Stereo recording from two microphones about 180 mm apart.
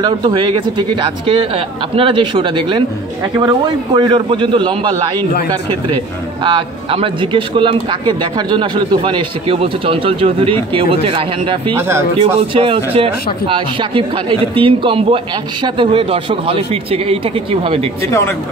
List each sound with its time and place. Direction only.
0.0 s a man's voice: 25° right (ahead or behind)
6.4 s a man's voice: 30° right (ahead or behind)
18.0 s speech: 15° left (ahead or behind)